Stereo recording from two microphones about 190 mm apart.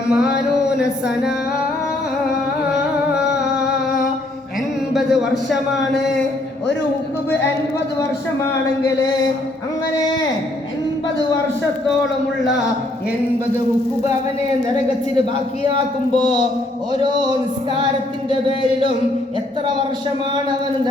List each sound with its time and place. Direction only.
0.1 s a man's voice: 5° right (ahead or behind)
4.9 s a man's voice: centre (ahead or behind)
16.1 s speech: 25° right (ahead or behind)